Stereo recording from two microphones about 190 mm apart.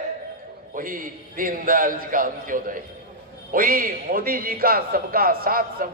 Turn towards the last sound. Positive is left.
turn(degrees=-50)  # may be behind; listen again after turning